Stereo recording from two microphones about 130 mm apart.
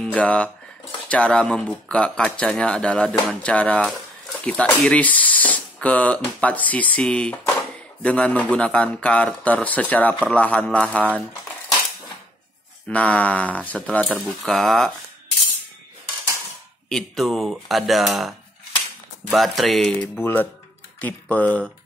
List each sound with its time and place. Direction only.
0.0 s speech: 10° left (ahead or behind)
12.8 s speech: 10° left (ahead or behind)
16.9 s speech: centre (ahead or behind)
19.3 s speech: centre (ahead or behind)
20.2 s speech: 15° left (ahead or behind)